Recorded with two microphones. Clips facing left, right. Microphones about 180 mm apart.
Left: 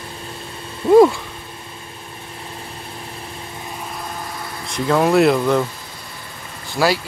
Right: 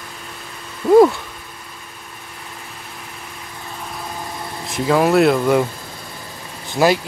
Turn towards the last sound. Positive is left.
turn(degrees=-20)  # may be behind; listen again after turning